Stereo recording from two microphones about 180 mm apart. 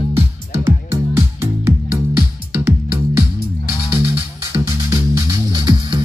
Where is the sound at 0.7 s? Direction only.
15° right (ahead or behind).